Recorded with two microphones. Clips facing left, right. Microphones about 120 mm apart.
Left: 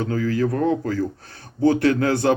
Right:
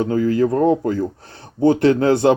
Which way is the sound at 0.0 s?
25° right (ahead or behind).